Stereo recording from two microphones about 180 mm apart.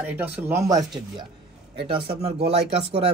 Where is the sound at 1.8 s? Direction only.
30° right (ahead or behind).